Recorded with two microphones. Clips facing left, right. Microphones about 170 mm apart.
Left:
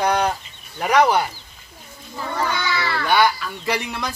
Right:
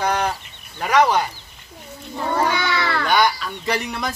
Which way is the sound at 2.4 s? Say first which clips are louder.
Right 2 dB; 60° right (ahead or behind).